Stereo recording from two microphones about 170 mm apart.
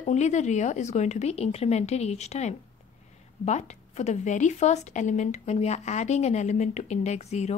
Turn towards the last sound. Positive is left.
turn(degrees=40)  # may be behind; listen again after turning